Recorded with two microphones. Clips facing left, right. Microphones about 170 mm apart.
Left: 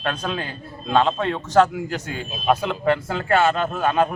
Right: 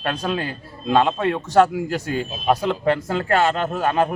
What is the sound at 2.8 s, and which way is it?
Speech, 40° right (ahead or behind).